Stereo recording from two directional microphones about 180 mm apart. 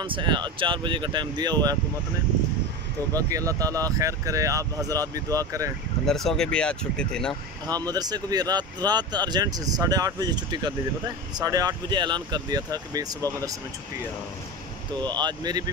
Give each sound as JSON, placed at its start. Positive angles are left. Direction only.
{"t": 0.0, "sound": "speech", "side_deg": -25}
{"t": 3.1, "sound": "speech", "side_deg": -20}
{"t": 6.0, "sound": "speech", "side_deg": 0}
{"t": 7.6, "sound": "speech", "side_deg": -20}
{"t": 15.0, "sound": "speech", "side_deg": -25}